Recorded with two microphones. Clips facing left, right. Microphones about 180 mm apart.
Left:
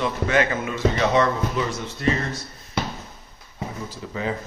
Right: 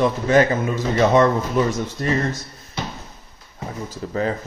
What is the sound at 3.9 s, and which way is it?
Speech, 45° right (ahead or behind).